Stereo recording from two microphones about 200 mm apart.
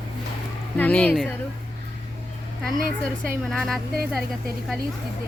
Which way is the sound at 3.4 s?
Centre (ahead or behind).